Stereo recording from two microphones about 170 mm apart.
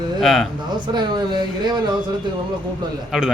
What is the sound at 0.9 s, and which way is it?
Speech, 25° right (ahead or behind).